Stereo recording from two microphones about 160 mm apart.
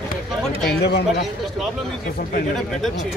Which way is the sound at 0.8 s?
90° left.